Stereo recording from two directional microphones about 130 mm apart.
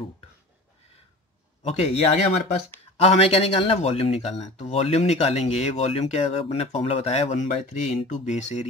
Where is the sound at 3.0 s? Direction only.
50° left (ahead or behind).